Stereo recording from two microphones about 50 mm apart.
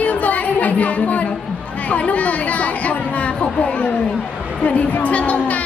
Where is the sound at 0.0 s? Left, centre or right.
Left.